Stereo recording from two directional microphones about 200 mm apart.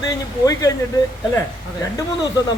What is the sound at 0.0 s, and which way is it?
Speech, 20° left (ahead or behind).